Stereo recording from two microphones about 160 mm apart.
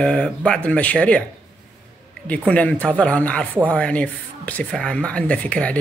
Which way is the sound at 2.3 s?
10° left (ahead or behind).